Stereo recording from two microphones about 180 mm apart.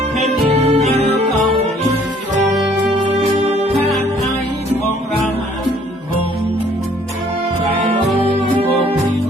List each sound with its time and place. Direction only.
0.6 s music: 35° right (ahead or behind)
3.4 s music: 35° right (ahead or behind)
8.2 s music: 30° right (ahead or behind)